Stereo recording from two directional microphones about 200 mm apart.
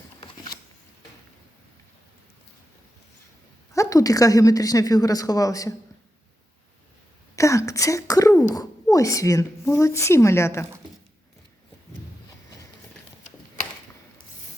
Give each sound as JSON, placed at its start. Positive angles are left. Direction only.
{"t": 3.7, "sound": "a woman's voice", "side_deg": 15}
{"t": 7.3, "sound": "speech", "side_deg": 15}